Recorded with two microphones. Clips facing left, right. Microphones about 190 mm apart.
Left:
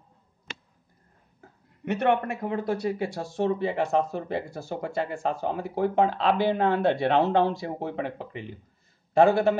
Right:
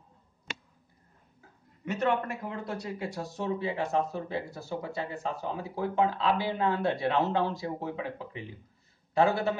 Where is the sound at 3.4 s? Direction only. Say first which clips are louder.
Left 5 dB; 55° left (ahead or behind); by 4.9 s 80° left.